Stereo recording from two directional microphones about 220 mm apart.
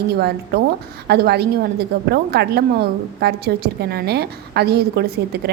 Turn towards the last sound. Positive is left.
turn(degrees=-45)  # may be behind; listen again after turning